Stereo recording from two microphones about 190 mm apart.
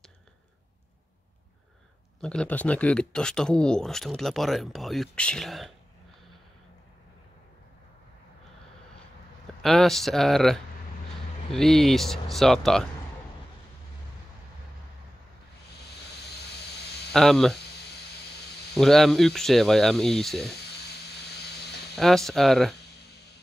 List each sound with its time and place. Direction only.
2.1 s speech: 5° left (ahead or behind)
9.6 s speech: centre (ahead or behind)
16.3 s vehicle: 60° left (ahead or behind)
17.1 s speech: centre (ahead or behind)
18.8 s speech: centre (ahead or behind)
20.4 s a sound: 60° left (ahead or behind)
21.9 s speech: centre (ahead or behind)